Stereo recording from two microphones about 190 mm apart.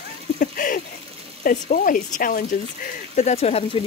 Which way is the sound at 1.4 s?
45° left (ahead or behind).